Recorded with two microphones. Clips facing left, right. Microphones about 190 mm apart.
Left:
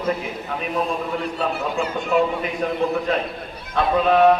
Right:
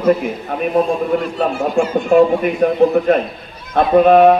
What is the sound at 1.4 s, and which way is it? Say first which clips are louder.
A man's voice: right 6 dB; 50° right (ahead or behind).